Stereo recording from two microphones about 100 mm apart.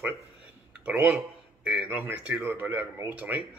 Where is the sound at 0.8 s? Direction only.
15° right (ahead or behind).